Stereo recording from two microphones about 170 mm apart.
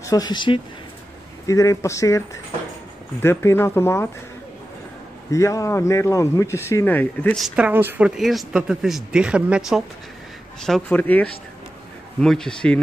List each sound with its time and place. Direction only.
0.0 s speech: 20° left (ahead or behind)
5.3 s speech: 20° left (ahead or behind)